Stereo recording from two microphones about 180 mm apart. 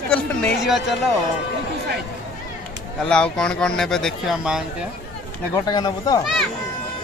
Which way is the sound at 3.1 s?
5° left (ahead or behind).